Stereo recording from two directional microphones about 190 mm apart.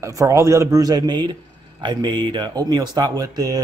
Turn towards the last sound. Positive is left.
turn(degrees=-20)  # may be behind; listen again after turning